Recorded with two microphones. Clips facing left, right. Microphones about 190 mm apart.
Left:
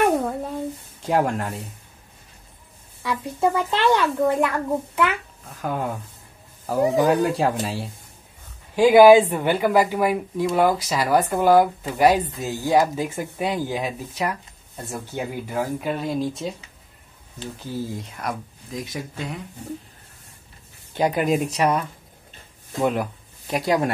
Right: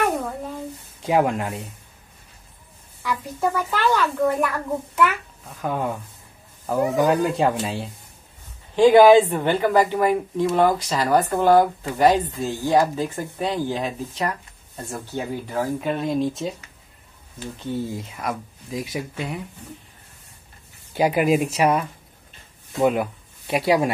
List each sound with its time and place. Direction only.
1.0 s speech: centre (ahead or behind)
3.0 s a child's voice: 20° left (ahead or behind)
5.6 s speech: centre (ahead or behind)
7.0 s speech: centre (ahead or behind)
17.6 s speech: centre (ahead or behind)
20.9 s speech: 5° right (ahead or behind)